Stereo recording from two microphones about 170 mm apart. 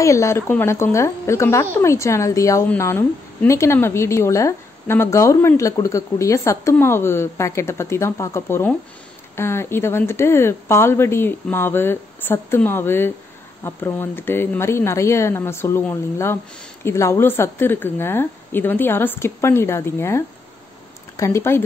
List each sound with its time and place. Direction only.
0.0 s a woman's voice: 15° left (ahead or behind)